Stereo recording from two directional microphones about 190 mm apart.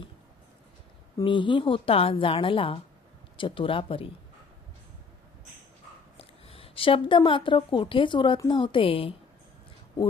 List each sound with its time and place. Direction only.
1.1 s a woman's voice: 25° left (ahead or behind)
6.1 s a woman's voice: 30° left (ahead or behind)